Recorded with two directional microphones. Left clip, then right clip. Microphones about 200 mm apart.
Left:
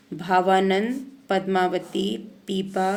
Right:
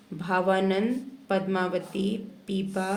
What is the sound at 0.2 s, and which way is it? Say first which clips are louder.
A woman's voice: left 5 dB; 40° left (ahead or behind).